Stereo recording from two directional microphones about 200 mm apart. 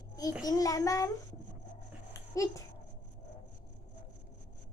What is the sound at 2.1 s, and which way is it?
Dog, 15° left (ahead or behind).